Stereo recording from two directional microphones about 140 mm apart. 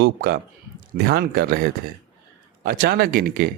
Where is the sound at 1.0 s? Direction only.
90° right.